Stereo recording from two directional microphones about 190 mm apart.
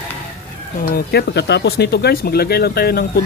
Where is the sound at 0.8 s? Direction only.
50° left (ahead or behind).